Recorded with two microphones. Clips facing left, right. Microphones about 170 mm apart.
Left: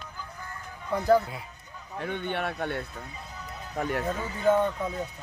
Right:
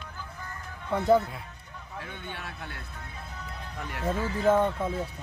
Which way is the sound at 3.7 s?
50° left (ahead or behind).